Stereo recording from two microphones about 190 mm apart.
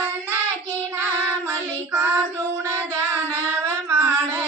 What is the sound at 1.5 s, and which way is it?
Child singing, 10° right (ahead or behind).